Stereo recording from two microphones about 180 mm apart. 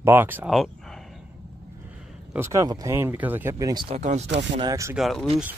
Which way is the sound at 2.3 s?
15° right (ahead or behind).